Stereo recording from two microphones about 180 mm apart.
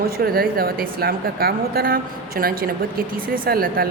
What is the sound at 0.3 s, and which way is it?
A woman's voice, 55° right (ahead or behind).